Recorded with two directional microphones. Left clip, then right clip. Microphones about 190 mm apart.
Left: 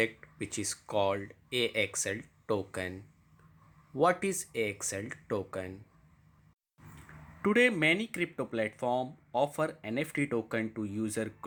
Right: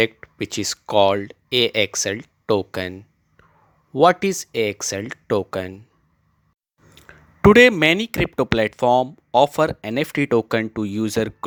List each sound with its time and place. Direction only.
0.0 s speech: 40° right (ahead or behind)
7.4 s speech: 50° right (ahead or behind)